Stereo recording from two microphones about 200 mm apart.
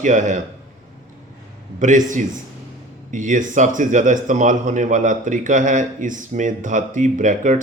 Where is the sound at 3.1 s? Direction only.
40° right (ahead or behind).